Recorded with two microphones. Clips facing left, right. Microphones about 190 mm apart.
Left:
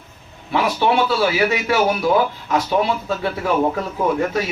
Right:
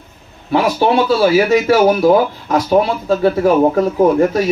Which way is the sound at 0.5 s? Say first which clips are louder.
Right 5 dB; 40° right (ahead or behind).